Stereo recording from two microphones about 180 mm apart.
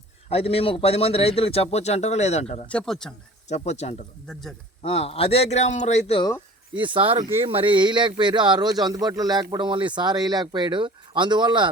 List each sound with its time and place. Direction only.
0.3 s a man's voice: 35° left (ahead or behind)
2.6 s speech: 5° left (ahead or behind)
3.5 s a man's voice: 35° left (ahead or behind)
4.3 s speech: centre (ahead or behind)
4.8 s a man's voice: 35° left (ahead or behind)
6.7 s speech: 25° right (ahead or behind)